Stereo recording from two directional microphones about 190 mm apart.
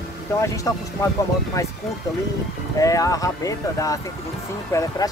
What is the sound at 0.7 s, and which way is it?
Speech, 15° left (ahead or behind).